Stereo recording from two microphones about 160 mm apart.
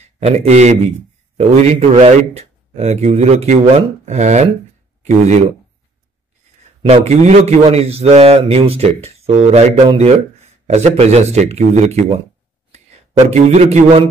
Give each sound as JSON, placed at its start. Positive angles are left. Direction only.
{"t": 0.0, "sound": "a man's voice", "side_deg": -40}
{"t": 6.8, "sound": "a man's voice", "side_deg": -45}
{"t": 13.3, "sound": "speech", "side_deg": -45}